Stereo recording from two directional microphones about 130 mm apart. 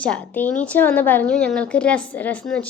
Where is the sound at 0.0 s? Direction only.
10° left (ahead or behind).